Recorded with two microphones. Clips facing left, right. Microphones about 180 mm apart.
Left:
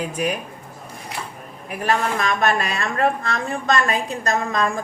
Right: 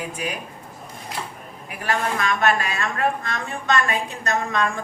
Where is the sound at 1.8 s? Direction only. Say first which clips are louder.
Left 2 dB; 35° left (ahead or behind).